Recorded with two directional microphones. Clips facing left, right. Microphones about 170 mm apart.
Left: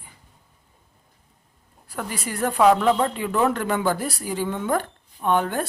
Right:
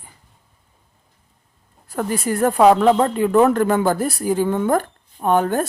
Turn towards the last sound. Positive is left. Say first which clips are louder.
# right 5 dB
turn(degrees=-45)  # may be behind; listen again after turning